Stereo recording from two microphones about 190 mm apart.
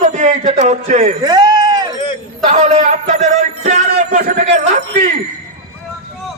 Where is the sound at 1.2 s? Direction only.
20° right (ahead or behind).